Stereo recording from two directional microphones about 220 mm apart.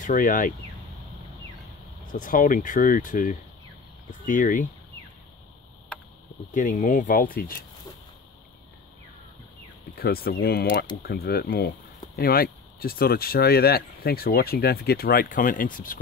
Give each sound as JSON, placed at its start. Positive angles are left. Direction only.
{"t": 0.0, "sound": "speech", "side_deg": 35}
{"t": 2.1, "sound": "speech", "side_deg": 40}
{"t": 6.5, "sound": "speech", "side_deg": 35}
{"t": 9.9, "sound": "speech", "side_deg": 45}